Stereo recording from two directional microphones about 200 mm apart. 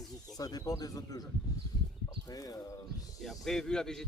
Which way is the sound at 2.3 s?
20° left (ahead or behind).